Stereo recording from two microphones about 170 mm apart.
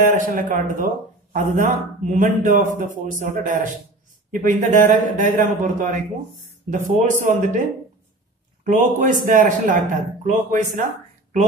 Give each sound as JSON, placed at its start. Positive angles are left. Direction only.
{"t": 0.0, "sound": "a man's voice", "side_deg": -55}
{"t": 8.6, "sound": "a man's voice", "side_deg": -50}